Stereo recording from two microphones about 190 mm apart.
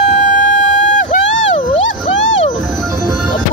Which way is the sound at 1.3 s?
75° left (ahead or behind).